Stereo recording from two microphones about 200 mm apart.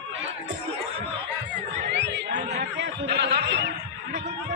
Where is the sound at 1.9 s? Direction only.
60° right (ahead or behind).